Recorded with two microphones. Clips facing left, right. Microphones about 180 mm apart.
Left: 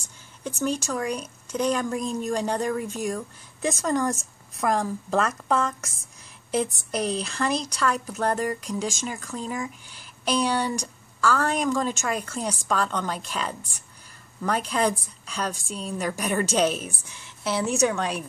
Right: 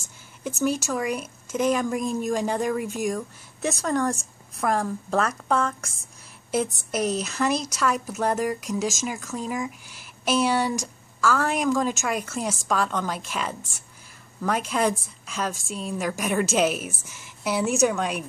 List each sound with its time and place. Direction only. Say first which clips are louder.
0.4 s a woman's voice: right 2 dB; 5° right (ahead or behind)